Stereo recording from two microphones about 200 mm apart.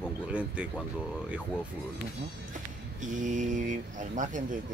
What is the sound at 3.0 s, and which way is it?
Speech, 40° right (ahead or behind).